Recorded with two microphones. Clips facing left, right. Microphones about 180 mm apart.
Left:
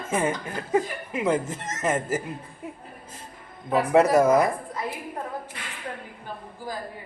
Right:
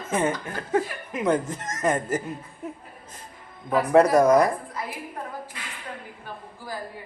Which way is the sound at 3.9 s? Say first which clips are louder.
Right 2 dB; 5° left (ahead or behind).